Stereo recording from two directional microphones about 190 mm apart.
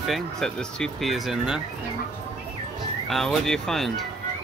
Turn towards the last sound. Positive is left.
turn(degrees=0)  # may be behind; listen again after turning